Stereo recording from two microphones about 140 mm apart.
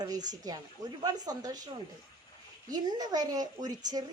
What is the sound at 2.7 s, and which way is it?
Speech, 30° right (ahead or behind).